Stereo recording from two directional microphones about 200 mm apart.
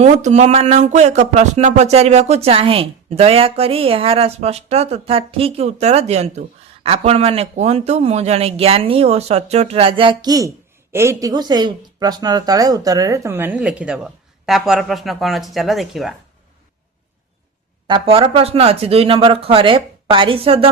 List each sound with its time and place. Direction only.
0.0 s speech: 35° right (ahead or behind); by 16.1 s centre (ahead or behind)
17.8 s speech: 25° right (ahead or behind)